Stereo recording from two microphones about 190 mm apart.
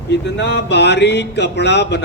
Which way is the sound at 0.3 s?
65° left (ahead or behind).